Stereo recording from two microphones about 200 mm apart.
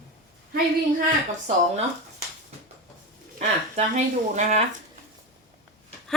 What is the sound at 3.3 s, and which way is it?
Speech, 35° right (ahead or behind).